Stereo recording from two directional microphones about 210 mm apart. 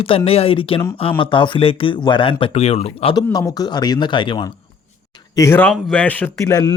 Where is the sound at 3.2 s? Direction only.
15° left (ahead or behind).